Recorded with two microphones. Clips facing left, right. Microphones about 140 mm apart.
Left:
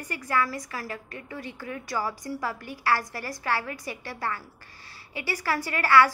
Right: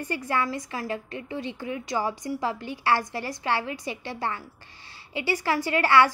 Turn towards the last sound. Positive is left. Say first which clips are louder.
# right 1 dB
turn(degrees=-25)  # may be behind; listen again after turning